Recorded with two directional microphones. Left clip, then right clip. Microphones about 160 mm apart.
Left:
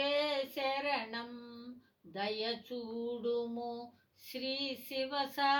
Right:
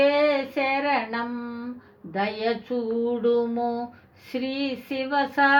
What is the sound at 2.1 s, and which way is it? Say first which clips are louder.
Speech: right 11 dB; 45° right (ahead or behind).